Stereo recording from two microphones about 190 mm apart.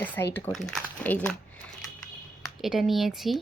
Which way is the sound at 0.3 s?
5° left (ahead or behind).